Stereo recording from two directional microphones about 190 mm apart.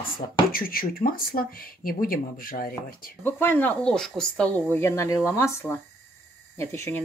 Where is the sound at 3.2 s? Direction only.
10° left (ahead or behind).